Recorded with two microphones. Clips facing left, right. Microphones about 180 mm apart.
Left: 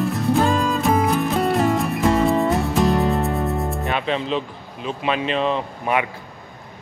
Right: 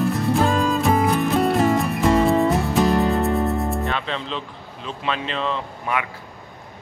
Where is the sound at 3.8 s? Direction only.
15° left (ahead or behind).